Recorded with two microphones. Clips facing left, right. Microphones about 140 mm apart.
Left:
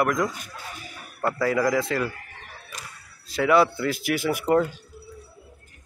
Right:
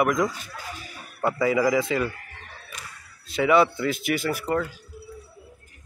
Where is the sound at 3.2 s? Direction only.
Centre (ahead or behind).